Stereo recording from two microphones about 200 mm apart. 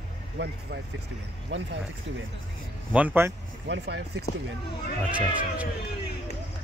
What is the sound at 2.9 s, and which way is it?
Speech, 10° right (ahead or behind).